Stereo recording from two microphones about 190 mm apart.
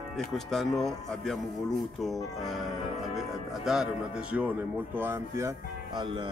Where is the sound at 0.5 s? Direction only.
Centre (ahead or behind).